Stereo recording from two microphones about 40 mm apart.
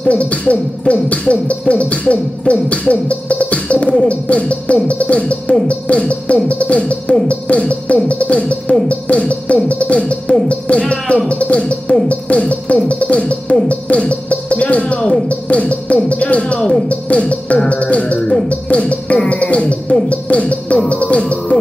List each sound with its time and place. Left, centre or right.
0.1 s beatboxing: left
10.7 s speech: left
11.2 s music: left